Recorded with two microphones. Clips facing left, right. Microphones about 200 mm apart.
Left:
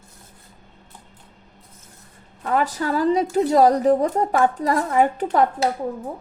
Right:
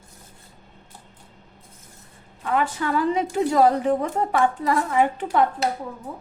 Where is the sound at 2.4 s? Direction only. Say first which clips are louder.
Left 2 dB; 40° left (ahead or behind).